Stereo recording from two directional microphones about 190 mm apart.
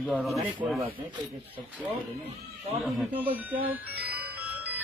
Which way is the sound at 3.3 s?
10° right (ahead or behind).